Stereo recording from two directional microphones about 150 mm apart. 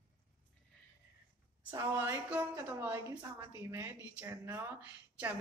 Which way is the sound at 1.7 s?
20° right (ahead or behind).